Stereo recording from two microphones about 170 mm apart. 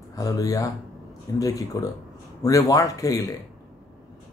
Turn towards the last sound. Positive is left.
turn(degrees=20)  # may be behind; listen again after turning